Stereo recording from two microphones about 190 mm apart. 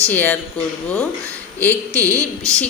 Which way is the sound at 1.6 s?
10° left (ahead or behind).